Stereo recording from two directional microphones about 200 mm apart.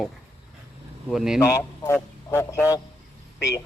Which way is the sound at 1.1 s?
Centre (ahead or behind).